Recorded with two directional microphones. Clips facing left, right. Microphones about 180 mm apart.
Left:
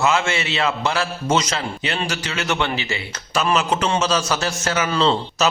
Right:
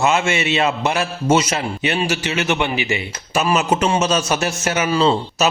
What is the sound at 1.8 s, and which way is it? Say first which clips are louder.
A man's voice: right 5 dB; 20° right (ahead or behind).